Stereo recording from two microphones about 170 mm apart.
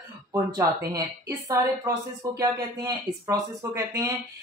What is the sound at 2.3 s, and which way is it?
Speech, 20° right (ahead or behind).